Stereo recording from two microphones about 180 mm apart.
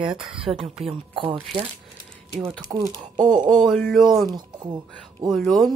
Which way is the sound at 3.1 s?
45° right (ahead or behind).